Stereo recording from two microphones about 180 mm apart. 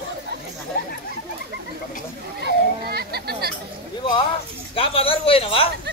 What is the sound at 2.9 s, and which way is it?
Children playing, 60° right (ahead or behind).